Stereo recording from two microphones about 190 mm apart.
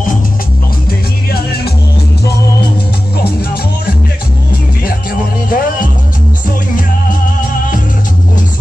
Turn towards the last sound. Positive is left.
turn(degrees=45)  # may be behind; listen again after turning